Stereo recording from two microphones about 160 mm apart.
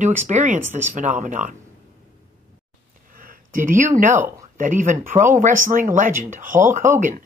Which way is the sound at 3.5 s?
55° right (ahead or behind).